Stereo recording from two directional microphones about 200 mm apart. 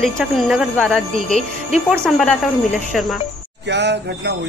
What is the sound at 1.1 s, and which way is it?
Speech, 40° right (ahead or behind).